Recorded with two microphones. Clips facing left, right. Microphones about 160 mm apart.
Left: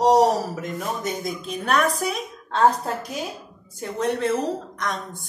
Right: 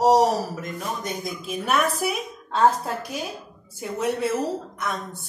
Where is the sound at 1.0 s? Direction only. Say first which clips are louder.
Left 2 dB; centre (ahead or behind).